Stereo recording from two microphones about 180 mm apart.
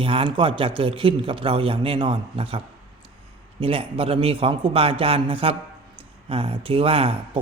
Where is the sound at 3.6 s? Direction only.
30° right (ahead or behind).